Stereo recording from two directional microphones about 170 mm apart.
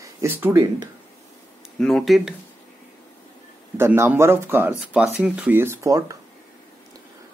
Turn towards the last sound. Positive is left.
turn(degrees=-20)  # may be behind; listen again after turning